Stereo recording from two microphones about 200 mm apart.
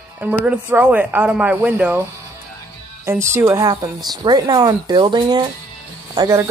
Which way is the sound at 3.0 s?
15° right (ahead or behind).